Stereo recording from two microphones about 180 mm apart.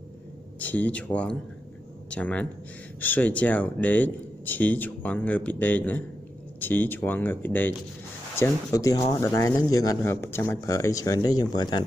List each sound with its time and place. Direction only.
0.6 s speech: 10° left (ahead or behind)